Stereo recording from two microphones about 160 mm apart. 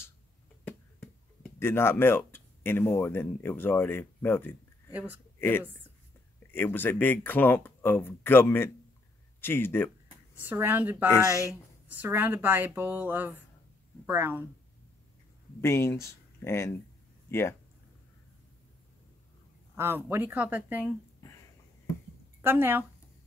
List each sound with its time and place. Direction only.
0.7 s speech: 10° left (ahead or behind)
10.3 s speech: 10° right (ahead or behind)
15.6 s speech: 15° left (ahead or behind)
19.8 s speech: 15° right (ahead or behind)
20.8 s a sound: 20° left (ahead or behind)
22.4 s speech: 15° right (ahead or behind)